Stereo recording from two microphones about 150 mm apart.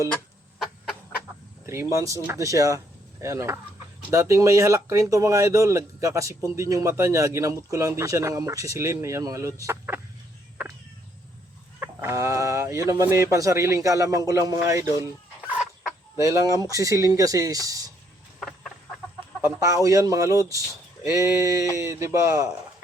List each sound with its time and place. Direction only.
1.6 s speech: 15° right (ahead or behind)
10.6 s music: 15° right (ahead or behind)
11.8 s speech: 15° right (ahead or behind)
15.5 s fowl: centre (ahead or behind)
16.1 s speech: 20° right (ahead or behind)
18.3 s chicken: centre (ahead or behind)
19.4 s speech: 20° right (ahead or behind)